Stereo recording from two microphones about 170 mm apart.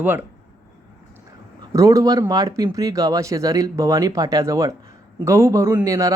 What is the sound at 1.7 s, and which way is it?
Speech, 20° right (ahead or behind).